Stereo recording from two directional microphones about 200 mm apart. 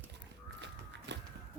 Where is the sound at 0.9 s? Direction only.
60° right (ahead or behind).